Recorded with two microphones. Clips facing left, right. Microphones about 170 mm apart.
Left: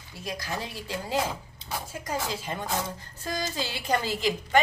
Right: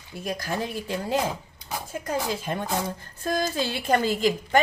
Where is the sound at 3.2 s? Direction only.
55° right (ahead or behind).